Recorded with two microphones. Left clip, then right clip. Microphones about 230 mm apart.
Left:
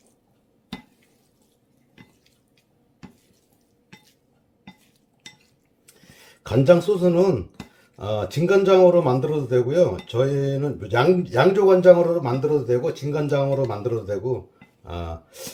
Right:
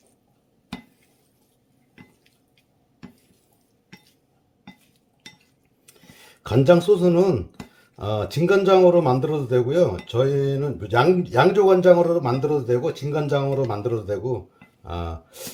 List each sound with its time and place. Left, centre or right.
6.4 s a man's voice: right